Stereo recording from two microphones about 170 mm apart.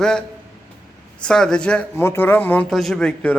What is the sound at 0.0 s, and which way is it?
A man's voice, 5° left (ahead or behind).